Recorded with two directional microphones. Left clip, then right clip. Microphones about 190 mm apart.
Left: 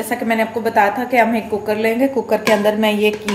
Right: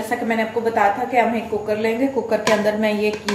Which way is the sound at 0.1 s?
50° left (ahead or behind).